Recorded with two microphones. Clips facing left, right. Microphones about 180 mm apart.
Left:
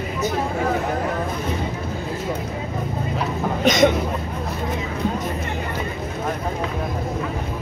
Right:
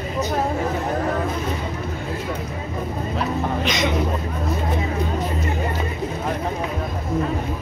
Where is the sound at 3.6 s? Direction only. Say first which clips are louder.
Left 11 dB; 45° left (ahead or behind).